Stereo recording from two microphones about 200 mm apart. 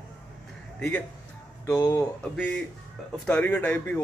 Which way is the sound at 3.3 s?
10° left (ahead or behind).